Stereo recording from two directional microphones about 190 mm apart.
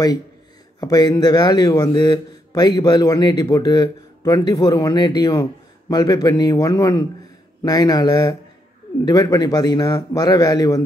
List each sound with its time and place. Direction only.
0.7 s speech: 20° left (ahead or behind)